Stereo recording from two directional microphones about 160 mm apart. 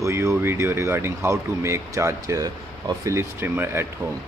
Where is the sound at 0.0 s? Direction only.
15° right (ahead or behind).